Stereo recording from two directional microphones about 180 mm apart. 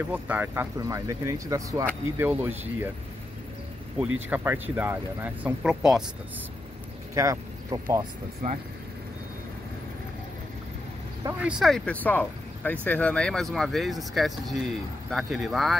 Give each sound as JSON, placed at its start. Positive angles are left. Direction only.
{"t": 0.1, "sound": "speech", "side_deg": -10}
{"t": 4.0, "sound": "speech", "side_deg": -10}
{"t": 7.2, "sound": "speech", "side_deg": -15}
{"t": 11.4, "sound": "speech", "side_deg": 0}